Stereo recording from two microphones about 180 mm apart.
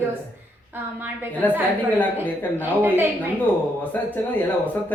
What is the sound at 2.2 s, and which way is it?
Speech, 10° right (ahead or behind).